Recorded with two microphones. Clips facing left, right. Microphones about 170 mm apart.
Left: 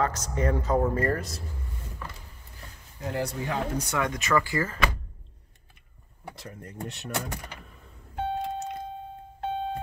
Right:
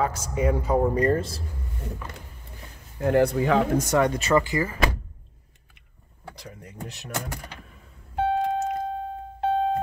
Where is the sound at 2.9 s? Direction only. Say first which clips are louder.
Right 11 dB; 60° right (ahead or behind).